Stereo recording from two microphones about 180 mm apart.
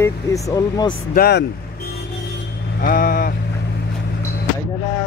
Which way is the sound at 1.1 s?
60° left (ahead or behind).